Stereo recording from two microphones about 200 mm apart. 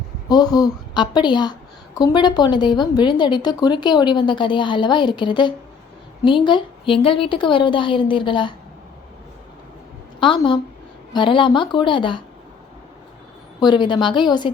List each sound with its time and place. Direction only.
0.3 s a woman's voice: 20° left (ahead or behind)
10.2 s a woman's voice: 25° left (ahead or behind)
13.6 s a woman's voice: 20° left (ahead or behind)